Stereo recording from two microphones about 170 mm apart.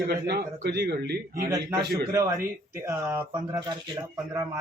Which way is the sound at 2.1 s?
15° right (ahead or behind).